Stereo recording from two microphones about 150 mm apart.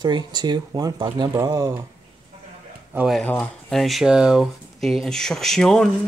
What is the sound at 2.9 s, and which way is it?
Speech, 5° right (ahead or behind).